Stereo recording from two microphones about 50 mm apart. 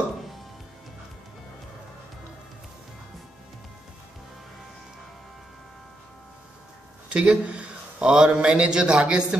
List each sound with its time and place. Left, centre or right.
7.1 s a man's voice: right